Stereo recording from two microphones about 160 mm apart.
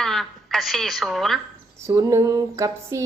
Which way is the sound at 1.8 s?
20° right (ahead or behind).